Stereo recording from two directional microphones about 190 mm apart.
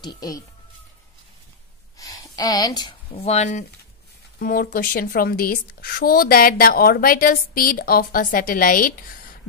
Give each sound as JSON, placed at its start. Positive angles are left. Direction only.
{"t": 0.0, "sound": "speech", "side_deg": 20}
{"t": 2.0, "sound": "speech", "side_deg": 20}
{"t": 4.4, "sound": "a woman's voice", "side_deg": 50}